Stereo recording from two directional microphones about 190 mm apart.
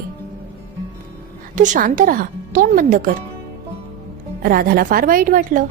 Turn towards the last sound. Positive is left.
turn(degrees=-45)  # may be behind; listen again after turning